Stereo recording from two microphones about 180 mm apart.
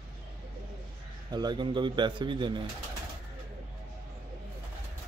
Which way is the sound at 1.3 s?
25° right (ahead or behind).